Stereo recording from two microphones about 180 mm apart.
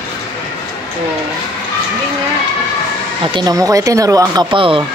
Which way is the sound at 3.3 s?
20° right (ahead or behind).